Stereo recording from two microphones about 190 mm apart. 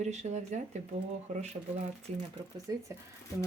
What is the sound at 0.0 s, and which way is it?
Speech, 35° right (ahead or behind).